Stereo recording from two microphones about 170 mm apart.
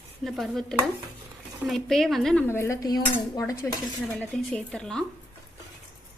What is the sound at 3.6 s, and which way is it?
Speech, 10° left (ahead or behind).